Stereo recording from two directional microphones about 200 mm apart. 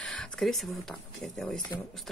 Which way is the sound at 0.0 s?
Centre (ahead or behind).